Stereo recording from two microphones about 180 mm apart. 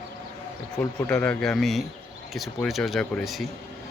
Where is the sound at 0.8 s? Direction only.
5° left (ahead or behind).